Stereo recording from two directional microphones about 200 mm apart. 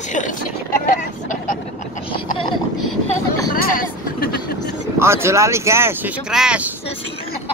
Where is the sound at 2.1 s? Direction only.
25° left (ahead or behind).